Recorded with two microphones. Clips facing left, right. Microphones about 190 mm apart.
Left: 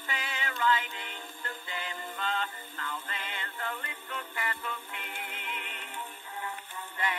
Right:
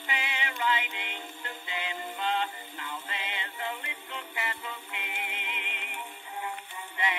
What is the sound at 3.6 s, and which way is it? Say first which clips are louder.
Music: right 1 dB; 15° right (ahead or behind).